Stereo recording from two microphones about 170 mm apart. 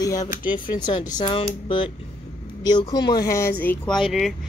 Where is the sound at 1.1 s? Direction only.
30° left (ahead or behind).